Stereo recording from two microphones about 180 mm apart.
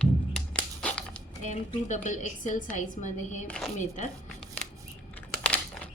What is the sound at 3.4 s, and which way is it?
Speech, 5° left (ahead or behind).